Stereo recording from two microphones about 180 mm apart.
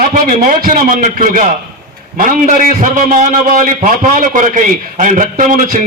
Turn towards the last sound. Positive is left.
turn(degrees=-45)  # may be behind; listen again after turning